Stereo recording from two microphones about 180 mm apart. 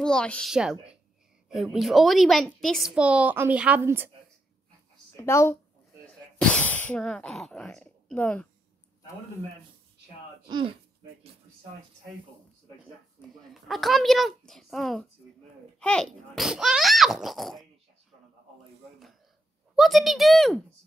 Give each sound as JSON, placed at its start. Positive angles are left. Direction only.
{"t": 0.0, "sound": "a woman's voice", "side_deg": 5}
{"t": 5.1, "sound": "speech", "side_deg": 15}
{"t": 6.0, "sound": "sneeze", "side_deg": 5}
{"t": 10.5, "sound": "speech", "side_deg": -30}
{"t": 13.5, "sound": "a woman's voice", "side_deg": 0}
{"t": 19.7, "sound": "a woman's voice", "side_deg": 0}